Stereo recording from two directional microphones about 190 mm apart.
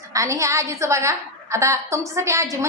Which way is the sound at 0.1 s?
15° right (ahead or behind).